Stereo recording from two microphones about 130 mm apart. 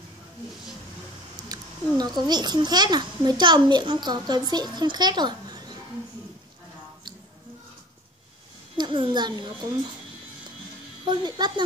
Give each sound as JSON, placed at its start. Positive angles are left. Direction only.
{"t": 1.5, "sound": "a child's voice", "side_deg": -30}
{"t": 8.7, "sound": "a child's voice", "side_deg": -35}
{"t": 11.1, "sound": "a child's voice", "side_deg": -35}